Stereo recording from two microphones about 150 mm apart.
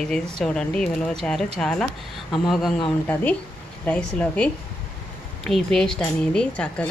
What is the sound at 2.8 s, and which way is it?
Speech, 10° left (ahead or behind).